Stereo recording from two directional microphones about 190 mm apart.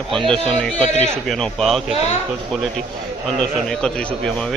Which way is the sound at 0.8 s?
30° right (ahead or behind).